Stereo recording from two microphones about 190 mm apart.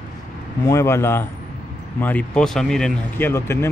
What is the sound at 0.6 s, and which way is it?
Speech, 15° left (ahead or behind).